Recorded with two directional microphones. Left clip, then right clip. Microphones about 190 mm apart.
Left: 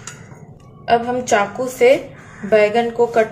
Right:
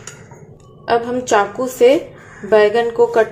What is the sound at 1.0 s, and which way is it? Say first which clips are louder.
A woman's voice: right 1 dB; 25° right (ahead or behind).